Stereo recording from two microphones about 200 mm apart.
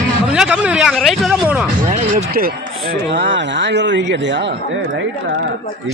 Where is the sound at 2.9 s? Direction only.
60° right (ahead or behind).